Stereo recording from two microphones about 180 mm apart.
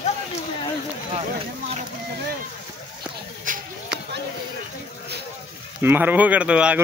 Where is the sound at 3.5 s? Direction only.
45° right (ahead or behind).